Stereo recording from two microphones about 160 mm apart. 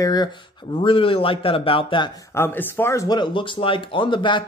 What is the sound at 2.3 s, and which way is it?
Speech, 15° left (ahead or behind).